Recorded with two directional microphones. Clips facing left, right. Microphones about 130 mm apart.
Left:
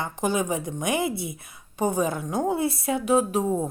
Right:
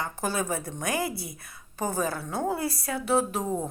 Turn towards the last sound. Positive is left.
turn(degrees=15)  # may be behind; listen again after turning